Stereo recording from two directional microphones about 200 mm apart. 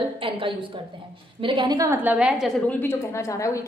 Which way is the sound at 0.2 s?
25° right (ahead or behind).